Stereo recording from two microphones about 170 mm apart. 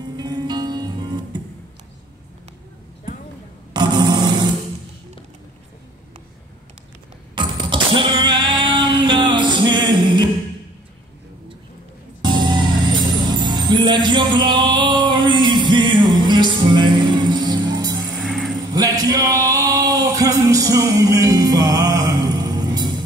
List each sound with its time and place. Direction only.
0.2 s music: 25° right (ahead or behind)
3.7 s a sound: 25° right (ahead or behind)
7.3 s a sound: 30° right (ahead or behind)
12.2 s music: 25° right (ahead or behind)
18.2 s music: centre (ahead or behind)
18.7 s music: 20° right (ahead or behind)